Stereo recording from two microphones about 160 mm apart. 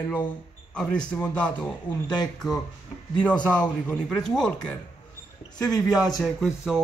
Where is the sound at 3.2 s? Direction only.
5° left (ahead or behind).